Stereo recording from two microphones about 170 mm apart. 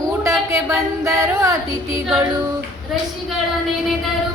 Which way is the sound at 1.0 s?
20° right (ahead or behind).